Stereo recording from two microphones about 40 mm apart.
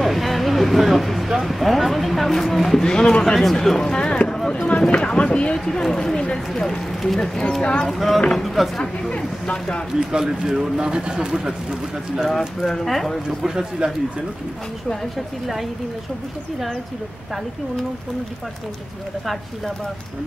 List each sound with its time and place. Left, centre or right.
0.0 s a sound: centre
2.8 s speech: left
3.8 s a sound: centre
4.6 s speech: left
5.7 s speech: centre
6.9 s speech: centre
7.2 s speech: centre
7.8 s speech: centre
9.5 s speech: left
9.9 s speech: centre
12.3 s speech: centre
13.4 s speech: centre
14.9 s speech: centre